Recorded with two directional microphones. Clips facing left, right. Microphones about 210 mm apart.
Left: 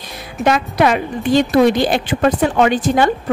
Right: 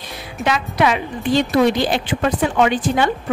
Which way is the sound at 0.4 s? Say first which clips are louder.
Left 4 dB; 45° left (ahead or behind).